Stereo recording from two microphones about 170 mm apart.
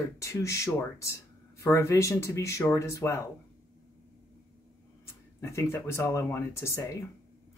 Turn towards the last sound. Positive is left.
turn(degrees=15)  # may be behind; listen again after turning